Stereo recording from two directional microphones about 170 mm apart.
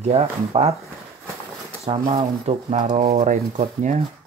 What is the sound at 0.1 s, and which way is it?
Speech, 35° right (ahead or behind).